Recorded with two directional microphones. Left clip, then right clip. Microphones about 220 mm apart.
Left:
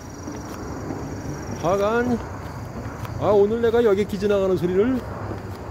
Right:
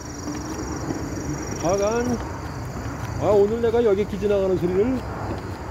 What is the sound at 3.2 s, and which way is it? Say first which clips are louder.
Speech: left 1 dB; 20° left (ahead or behind).